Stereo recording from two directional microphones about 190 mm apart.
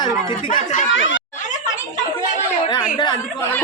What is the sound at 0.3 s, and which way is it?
Speech, 30° left (ahead or behind).